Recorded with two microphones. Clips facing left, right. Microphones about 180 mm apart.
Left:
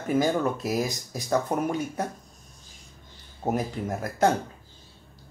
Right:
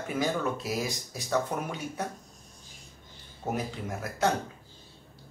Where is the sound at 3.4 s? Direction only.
45° left (ahead or behind).